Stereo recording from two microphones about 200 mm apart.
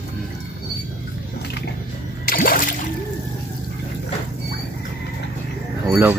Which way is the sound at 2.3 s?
45° left (ahead or behind).